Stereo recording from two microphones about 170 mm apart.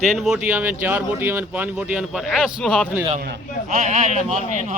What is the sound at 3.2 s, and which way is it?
Speech, 60° right (ahead or behind).